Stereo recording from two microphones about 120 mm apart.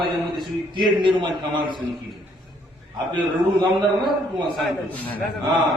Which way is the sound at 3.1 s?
40° right (ahead or behind).